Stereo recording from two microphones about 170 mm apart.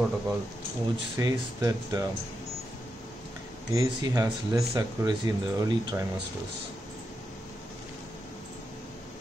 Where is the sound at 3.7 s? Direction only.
20° right (ahead or behind).